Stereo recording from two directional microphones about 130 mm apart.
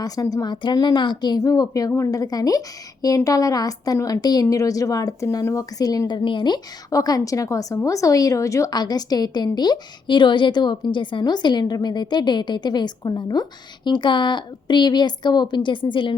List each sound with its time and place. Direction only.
0.0 s a woman's voice: 30° left (ahead or behind)